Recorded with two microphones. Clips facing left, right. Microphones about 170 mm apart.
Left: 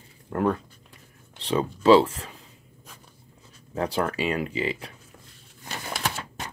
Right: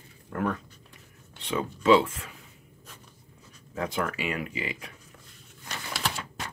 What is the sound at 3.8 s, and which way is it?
Speech, 35° left (ahead or behind).